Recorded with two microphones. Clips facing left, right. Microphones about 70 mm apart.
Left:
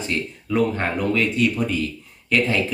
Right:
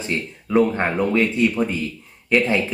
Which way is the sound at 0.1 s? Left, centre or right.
Centre.